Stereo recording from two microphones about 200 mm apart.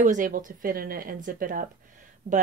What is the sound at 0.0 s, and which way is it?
Speech, 40° right (ahead or behind).